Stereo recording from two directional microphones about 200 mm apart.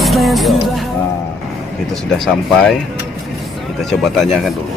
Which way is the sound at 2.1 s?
Centre (ahead or behind).